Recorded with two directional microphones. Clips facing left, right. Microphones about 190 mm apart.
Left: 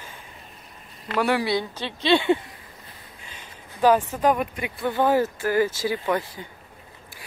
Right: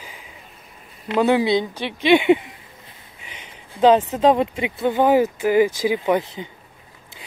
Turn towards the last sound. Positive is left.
turn(degrees=-20)  # may be behind; listen again after turning